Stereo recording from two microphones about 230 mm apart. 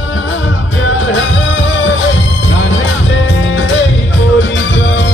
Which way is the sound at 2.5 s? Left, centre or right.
Left.